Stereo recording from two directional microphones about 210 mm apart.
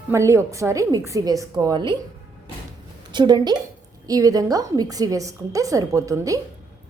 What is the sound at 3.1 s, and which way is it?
A woman's voice, 20° right (ahead or behind).